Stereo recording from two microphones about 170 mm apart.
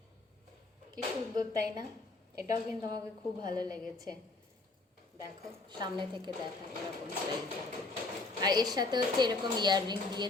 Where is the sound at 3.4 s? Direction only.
25° right (ahead or behind).